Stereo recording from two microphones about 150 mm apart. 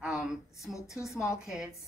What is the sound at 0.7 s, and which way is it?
Speech, 20° left (ahead or behind).